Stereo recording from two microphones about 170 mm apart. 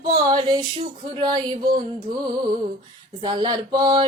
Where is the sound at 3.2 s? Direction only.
25° right (ahead or behind).